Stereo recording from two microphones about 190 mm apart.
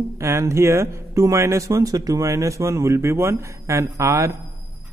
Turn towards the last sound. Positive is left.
turn(degrees=-15)  # may be behind; listen again after turning